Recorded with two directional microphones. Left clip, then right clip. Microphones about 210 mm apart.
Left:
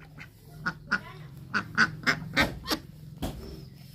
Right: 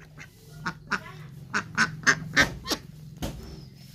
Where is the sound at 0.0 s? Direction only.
15° right (ahead or behind).